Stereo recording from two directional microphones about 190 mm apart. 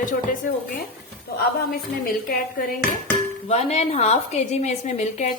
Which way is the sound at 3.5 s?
35° left (ahead or behind).